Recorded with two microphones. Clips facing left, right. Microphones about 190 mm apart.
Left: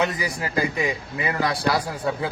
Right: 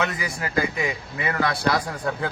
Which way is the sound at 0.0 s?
35° left (ahead or behind).